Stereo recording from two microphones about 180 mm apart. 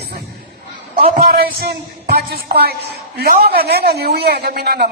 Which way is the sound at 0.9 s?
55° right (ahead or behind).